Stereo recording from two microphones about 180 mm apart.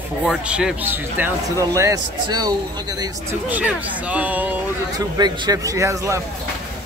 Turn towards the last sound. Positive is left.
turn(degrees=-15)  # may be behind; listen again after turning